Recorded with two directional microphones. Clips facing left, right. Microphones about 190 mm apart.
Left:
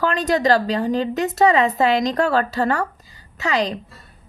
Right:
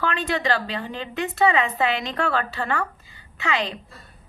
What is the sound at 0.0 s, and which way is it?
A woman's voice, 40° left (ahead or behind).